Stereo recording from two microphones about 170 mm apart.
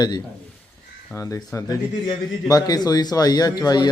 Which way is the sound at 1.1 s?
20° left (ahead or behind).